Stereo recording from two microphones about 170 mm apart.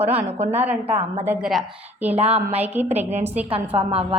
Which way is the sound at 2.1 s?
35° right (ahead or behind).